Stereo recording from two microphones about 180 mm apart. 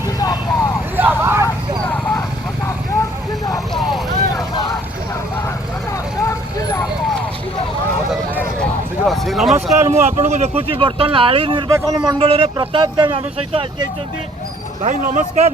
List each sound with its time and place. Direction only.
0.2 s vehicle: 20° left (ahead or behind)
0.9 s vehicle: 10° right (ahead or behind)
2.6 s vehicle: 15° left (ahead or behind)
9.0 s a sound: centre (ahead or behind)
9.8 s speech: 15° right (ahead or behind)
10.1 s a man's voice: 40° right (ahead or behind)
10.6 s speech: 30° right (ahead or behind)
14.8 s a man's voice: 45° right (ahead or behind)